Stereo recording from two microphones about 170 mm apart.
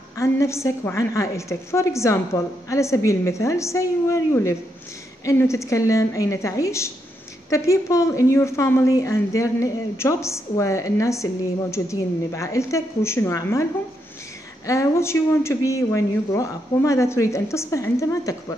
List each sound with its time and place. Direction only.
0.2 s a woman's voice: 15° left (ahead or behind)
14.7 s a woman's voice: 15° left (ahead or behind)